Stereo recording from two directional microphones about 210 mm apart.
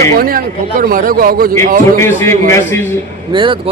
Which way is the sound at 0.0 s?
45° right (ahead or behind).